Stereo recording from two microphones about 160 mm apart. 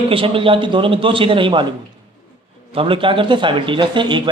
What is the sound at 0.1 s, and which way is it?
Speech, 35° right (ahead or behind).